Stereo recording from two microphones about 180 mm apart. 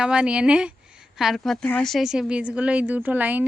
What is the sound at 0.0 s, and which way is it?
A woman's voice, 5° right (ahead or behind).